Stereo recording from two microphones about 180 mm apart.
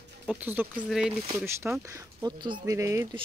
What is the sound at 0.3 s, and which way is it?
Speech, 10° right (ahead or behind).